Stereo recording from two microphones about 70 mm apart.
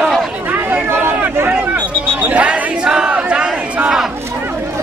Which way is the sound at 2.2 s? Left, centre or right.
Centre.